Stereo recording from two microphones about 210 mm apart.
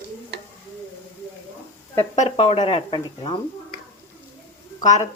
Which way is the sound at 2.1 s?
30° left (ahead or behind).